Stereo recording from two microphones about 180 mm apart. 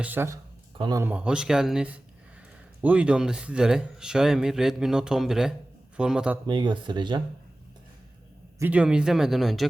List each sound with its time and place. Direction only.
0.0 s speech: 10° right (ahead or behind)
1.1 s speech: 5° right (ahead or behind)
6.5 s speech: 25° right (ahead or behind)
8.5 s speech: 10° right (ahead or behind)